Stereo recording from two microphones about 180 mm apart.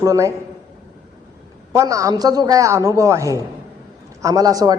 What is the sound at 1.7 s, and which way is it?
A woman's voice, 20° right (ahead or behind).